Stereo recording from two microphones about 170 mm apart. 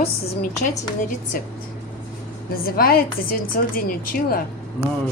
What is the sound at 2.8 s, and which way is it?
A woman's voice, 60° left (ahead or behind).